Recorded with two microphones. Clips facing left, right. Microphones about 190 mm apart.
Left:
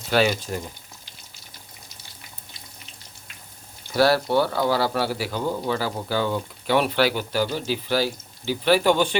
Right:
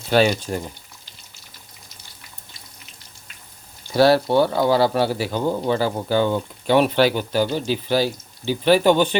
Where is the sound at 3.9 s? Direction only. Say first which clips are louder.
Right 4 dB; 25° right (ahead or behind).